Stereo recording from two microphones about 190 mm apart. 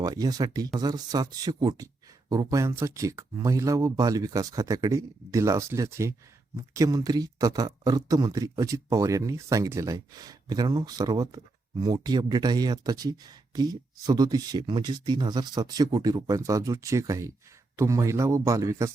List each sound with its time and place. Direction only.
0.0 s speech: 20° right (ahead or behind)